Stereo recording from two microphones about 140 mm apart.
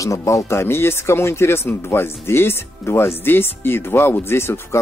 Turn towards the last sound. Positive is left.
turn(degrees=15)  # may be behind; listen again after turning